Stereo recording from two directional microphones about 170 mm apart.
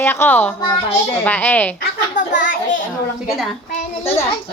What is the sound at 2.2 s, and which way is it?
Speech, 50° left (ahead or behind).